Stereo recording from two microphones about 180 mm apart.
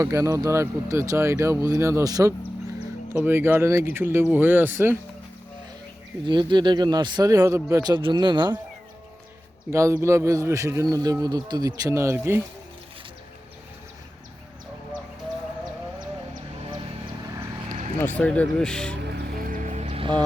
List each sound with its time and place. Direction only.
0.0 s speech: 15° right (ahead or behind)
6.2 s speech: 25° right (ahead or behind)
9.6 s speech: 15° right (ahead or behind)
18.2 s speech: 5° left (ahead or behind)
19.5 s music: 40° right (ahead or behind)